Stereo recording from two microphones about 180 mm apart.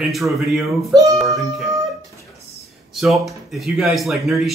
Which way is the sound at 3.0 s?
Centre (ahead or behind).